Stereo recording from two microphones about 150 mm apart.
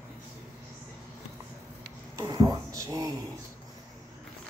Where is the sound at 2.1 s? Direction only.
25° right (ahead or behind).